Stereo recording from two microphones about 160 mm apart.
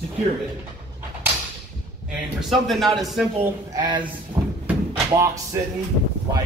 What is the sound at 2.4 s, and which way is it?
Speech, centre (ahead or behind).